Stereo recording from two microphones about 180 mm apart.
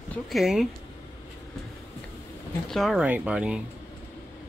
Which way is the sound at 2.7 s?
Centre (ahead or behind).